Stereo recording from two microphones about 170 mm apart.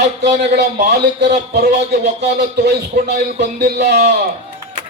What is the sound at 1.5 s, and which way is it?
A man's voice, 80° right.